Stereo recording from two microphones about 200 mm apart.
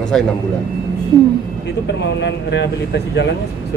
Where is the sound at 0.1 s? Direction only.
Centre (ahead or behind).